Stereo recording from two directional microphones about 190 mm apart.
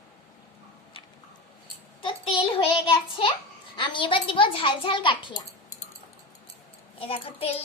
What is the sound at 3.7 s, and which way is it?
A child's voice, 25° left (ahead or behind).